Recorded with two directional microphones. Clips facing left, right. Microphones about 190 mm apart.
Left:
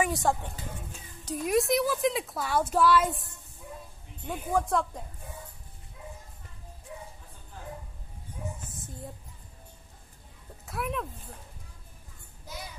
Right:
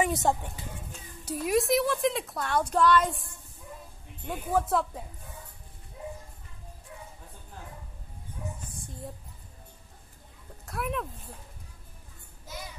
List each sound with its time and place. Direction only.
0.0 s speech: 20° right (ahead or behind)
1.2 s a woman's voice: 5° right (ahead or behind)
4.3 s a woman's voice: centre (ahead or behind)
10.6 s speech: centre (ahead or behind)